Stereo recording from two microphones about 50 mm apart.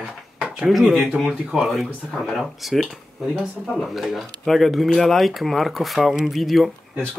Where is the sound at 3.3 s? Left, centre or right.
Centre.